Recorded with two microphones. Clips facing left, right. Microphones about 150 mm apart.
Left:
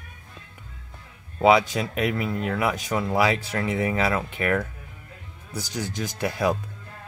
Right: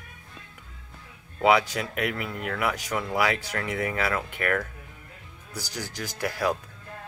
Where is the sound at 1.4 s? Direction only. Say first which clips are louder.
Left 3 dB; 25° left (ahead or behind).